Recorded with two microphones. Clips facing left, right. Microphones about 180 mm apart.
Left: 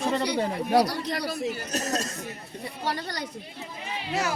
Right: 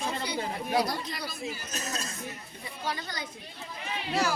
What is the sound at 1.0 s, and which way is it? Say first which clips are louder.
Speech: left 8 dB; 70° left (ahead or behind).